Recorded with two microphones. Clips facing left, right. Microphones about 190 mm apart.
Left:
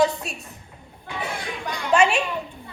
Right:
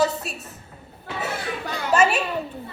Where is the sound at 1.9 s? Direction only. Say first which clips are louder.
Even; 5° right (ahead or behind).